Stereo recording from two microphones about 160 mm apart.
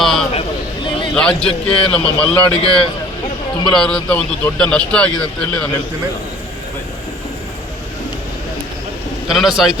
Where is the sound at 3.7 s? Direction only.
5° left (ahead or behind).